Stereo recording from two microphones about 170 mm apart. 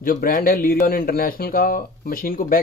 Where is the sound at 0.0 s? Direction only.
55° left (ahead or behind).